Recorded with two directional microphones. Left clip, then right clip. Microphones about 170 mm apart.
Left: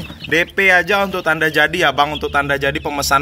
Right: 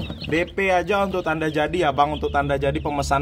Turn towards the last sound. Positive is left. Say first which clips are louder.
# left 6 dB
turn(degrees=5)  # may be behind; listen again after turning